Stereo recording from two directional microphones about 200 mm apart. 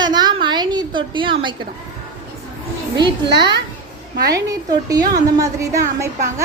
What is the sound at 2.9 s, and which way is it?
A woman's voice, 20° right (ahead or behind).